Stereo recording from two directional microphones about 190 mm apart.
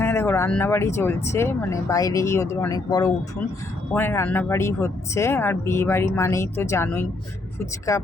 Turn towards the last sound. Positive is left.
turn(degrees=15)  # may be behind; listen again after turning